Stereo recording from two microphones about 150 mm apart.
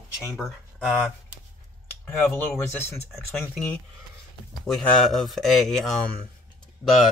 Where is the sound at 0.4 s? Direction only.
Centre (ahead or behind).